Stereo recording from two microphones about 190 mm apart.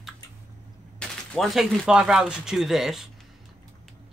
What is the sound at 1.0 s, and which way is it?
Speech, centre (ahead or behind).